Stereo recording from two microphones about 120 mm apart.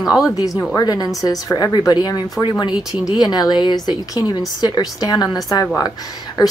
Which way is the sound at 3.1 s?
35° left (ahead or behind).